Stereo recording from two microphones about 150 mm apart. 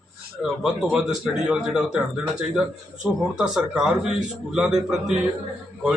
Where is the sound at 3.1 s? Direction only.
10° right (ahead or behind).